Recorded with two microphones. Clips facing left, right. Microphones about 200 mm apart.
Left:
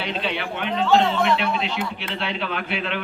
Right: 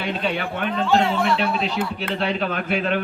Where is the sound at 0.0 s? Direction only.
45° right (ahead or behind).